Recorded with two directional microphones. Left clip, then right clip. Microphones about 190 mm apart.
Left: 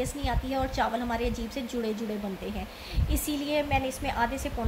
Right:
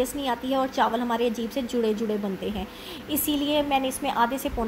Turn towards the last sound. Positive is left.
turn(degrees=-15)  # may be behind; listen again after turning